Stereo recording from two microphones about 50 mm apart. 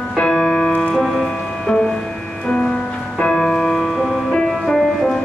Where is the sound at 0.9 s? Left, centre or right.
Centre.